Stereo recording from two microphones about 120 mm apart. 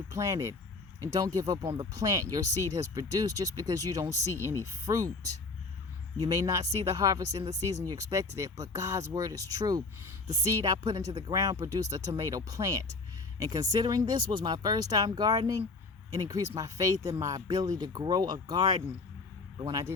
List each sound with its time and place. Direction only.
0.1 s speech: 25° right (ahead or behind)
6.1 s speech: 30° right (ahead or behind)